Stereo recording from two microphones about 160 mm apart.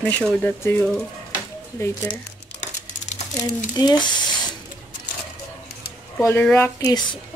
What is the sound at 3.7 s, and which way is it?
Speech, 25° left (ahead or behind).